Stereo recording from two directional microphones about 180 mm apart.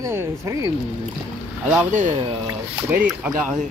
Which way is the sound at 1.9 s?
45° right (ahead or behind).